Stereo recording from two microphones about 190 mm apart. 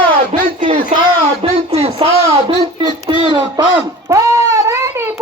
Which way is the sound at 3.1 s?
25° right (ahead or behind).